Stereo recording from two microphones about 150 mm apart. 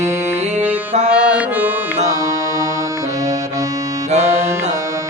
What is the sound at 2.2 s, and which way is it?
Music, 20° right (ahead or behind).